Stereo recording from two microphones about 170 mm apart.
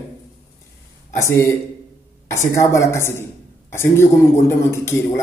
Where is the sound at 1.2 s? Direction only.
15° left (ahead or behind).